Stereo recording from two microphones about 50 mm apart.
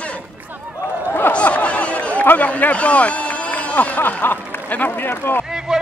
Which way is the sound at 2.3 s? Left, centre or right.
Left.